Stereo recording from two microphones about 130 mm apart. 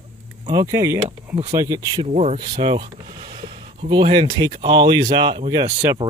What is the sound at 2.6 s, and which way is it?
Speech, 45° right (ahead or behind).